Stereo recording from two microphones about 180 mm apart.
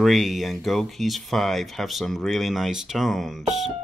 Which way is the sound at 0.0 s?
Centre (ahead or behind).